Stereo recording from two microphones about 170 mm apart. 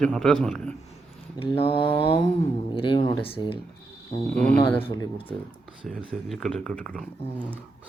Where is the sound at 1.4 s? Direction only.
35° left (ahead or behind).